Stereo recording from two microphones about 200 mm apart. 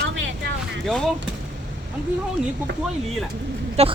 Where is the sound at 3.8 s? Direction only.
30° right (ahead or behind).